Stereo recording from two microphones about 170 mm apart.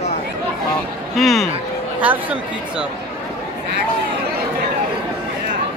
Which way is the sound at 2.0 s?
10° right (ahead or behind).